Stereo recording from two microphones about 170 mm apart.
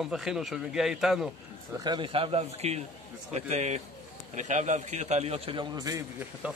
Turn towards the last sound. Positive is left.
turn(degrees=-15)  # may be behind; listen again after turning